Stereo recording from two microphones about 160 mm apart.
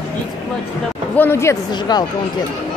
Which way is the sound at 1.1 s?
15° left (ahead or behind).